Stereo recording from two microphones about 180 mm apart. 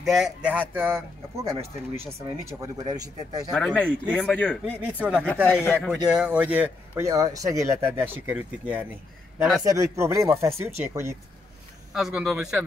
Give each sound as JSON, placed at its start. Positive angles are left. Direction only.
{"t": 0.0, "sound": "speech", "side_deg": 0}
{"t": 3.5, "sound": "speech", "side_deg": 5}
{"t": 4.6, "sound": "speech", "side_deg": -10}
{"t": 5.2, "sound": "speech", "side_deg": 5}
{"t": 6.1, "sound": "speech", "side_deg": -10}
{"t": 11.9, "sound": "speech", "side_deg": -5}